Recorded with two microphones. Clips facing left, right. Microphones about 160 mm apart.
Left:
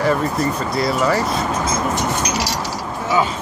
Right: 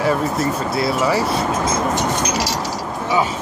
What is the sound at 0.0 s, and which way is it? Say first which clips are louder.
Speech: even; 5° right (ahead or behind).